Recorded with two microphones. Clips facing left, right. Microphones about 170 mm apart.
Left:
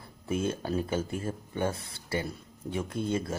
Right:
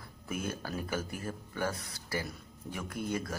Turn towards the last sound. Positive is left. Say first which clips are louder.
# left 5 dB
turn(degrees=25)  # may be behind; listen again after turning